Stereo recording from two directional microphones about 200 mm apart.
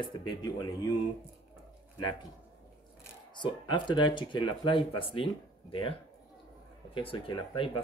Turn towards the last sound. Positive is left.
turn(degrees=25)  # may be behind; listen again after turning